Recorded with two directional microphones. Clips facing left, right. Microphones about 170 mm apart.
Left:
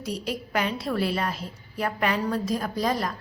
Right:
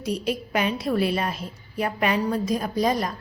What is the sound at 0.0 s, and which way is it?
A woman's voice, 20° right (ahead or behind).